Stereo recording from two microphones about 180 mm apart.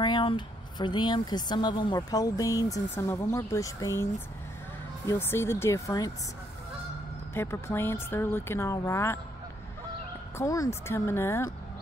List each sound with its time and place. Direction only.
0.0 s speech: 25° left (ahead or behind)
7.3 s speech: 15° left (ahead or behind)
10.3 s speech: 20° left (ahead or behind)